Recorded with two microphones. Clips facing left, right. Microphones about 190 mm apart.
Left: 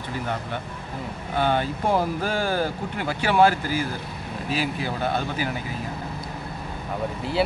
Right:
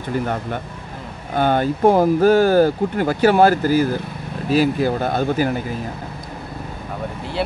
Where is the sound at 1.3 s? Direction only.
45° right (ahead or behind).